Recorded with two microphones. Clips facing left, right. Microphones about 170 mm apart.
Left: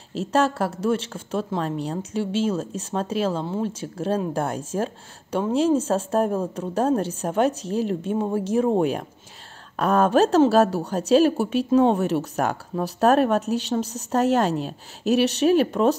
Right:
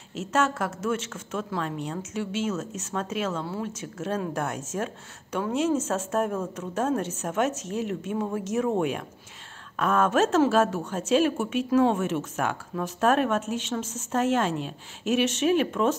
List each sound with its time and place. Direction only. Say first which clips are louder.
0.1 s a woman's voice: left 4 dB; 35° left (ahead or behind)